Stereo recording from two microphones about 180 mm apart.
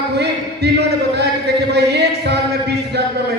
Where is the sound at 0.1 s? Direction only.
70° right (ahead or behind).